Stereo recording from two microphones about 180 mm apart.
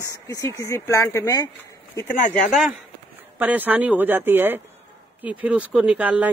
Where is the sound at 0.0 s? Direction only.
20° left (ahead or behind).